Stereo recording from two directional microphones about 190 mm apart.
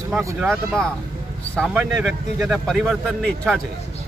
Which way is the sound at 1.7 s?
5° right (ahead or behind).